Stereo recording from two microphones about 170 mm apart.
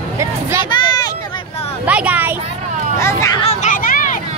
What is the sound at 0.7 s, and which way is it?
Vehicle, 25° left (ahead or behind).